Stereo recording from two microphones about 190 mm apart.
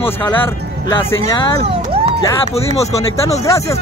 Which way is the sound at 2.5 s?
35° left (ahead or behind).